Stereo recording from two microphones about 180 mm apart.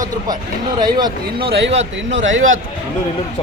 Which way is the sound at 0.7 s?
25° right (ahead or behind).